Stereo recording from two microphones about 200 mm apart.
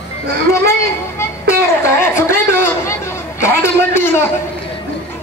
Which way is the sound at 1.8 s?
10° left (ahead or behind).